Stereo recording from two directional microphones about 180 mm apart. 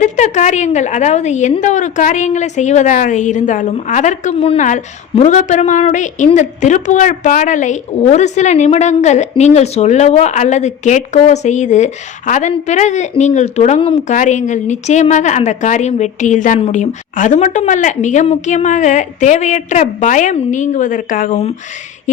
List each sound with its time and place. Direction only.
0.0 s a woman's voice: 40° left (ahead or behind)